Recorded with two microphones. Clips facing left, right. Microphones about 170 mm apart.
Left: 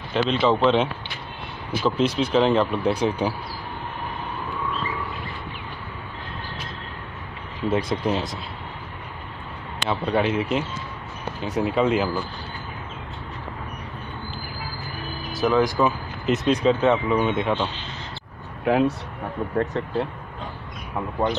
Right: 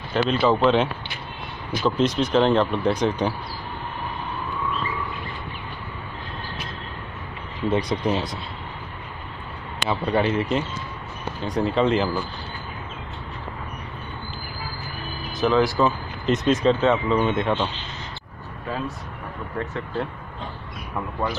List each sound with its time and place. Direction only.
0.1 s speech: 5° right (ahead or behind)
7.6 s speech: 5° left (ahead or behind)
9.8 s speech: centre (ahead or behind)
15.3 s music: 5° left (ahead or behind)
15.6 s speech: 15° left (ahead or behind)
16.3 s speech: centre (ahead or behind)
16.8 s speech: 10° left (ahead or behind)
19.5 s speech: 40° left (ahead or behind)